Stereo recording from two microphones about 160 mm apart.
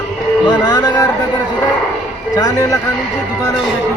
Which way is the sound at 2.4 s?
20° left (ahead or behind).